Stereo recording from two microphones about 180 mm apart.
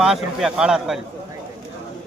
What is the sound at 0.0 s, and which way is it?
A man's voice, centre (ahead or behind).